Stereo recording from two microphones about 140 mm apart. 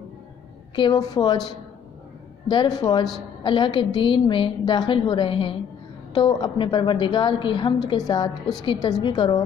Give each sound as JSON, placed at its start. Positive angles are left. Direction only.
{"t": 0.7, "sound": "a woman's voice", "side_deg": 30}
{"t": 2.5, "sound": "a woman's voice", "side_deg": 30}